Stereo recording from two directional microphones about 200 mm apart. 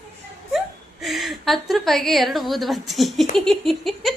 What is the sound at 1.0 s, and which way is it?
A woman's voice, centre (ahead or behind).